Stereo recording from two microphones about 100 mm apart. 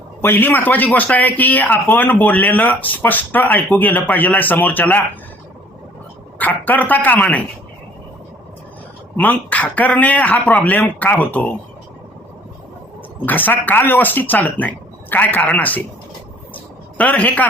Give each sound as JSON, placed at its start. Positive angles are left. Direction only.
{"t": 0.2, "sound": "a man's voice", "side_deg": 20}
{"t": 6.4, "sound": "a man's voice", "side_deg": 15}
{"t": 9.1, "sound": "a man's voice", "side_deg": 15}
{"t": 13.2, "sound": "a man's voice", "side_deg": 20}
{"t": 17.0, "sound": "a man's voice", "side_deg": 15}